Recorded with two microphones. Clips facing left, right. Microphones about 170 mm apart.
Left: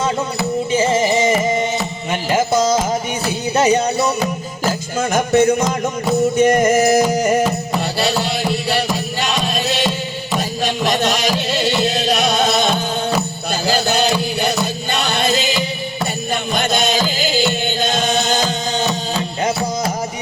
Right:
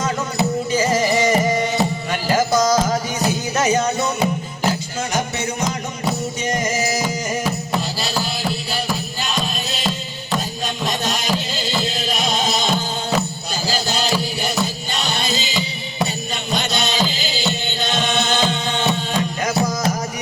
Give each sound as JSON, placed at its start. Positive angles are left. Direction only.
{"t": 0.7, "sound": "music", "side_deg": 25}
{"t": 2.2, "sound": "carnatic music", "side_deg": 25}
{"t": 3.5, "sound": "music", "side_deg": 30}
{"t": 4.9, "sound": "music", "side_deg": 55}
{"t": 9.2, "sound": "music", "side_deg": 75}
{"t": 13.7, "sound": "music", "side_deg": 60}